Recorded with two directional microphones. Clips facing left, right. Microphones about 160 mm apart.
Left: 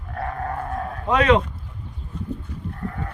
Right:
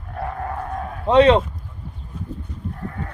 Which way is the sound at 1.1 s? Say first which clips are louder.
Right 5 dB; 30° right (ahead or behind).